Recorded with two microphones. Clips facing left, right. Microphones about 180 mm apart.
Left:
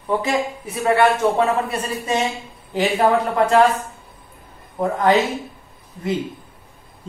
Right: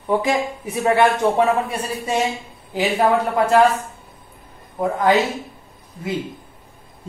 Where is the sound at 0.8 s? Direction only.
20° right (ahead or behind).